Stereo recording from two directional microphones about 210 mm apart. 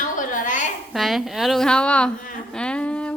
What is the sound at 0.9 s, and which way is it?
A woman's voice, centre (ahead or behind).